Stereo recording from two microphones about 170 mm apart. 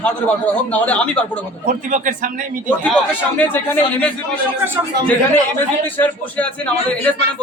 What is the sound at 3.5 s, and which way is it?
Speech, 10° left (ahead or behind).